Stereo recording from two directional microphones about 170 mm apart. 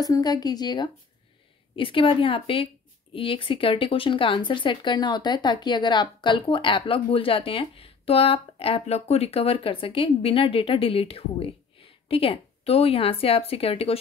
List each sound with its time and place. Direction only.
0.0 s a woman's voice: 20° left (ahead or behind)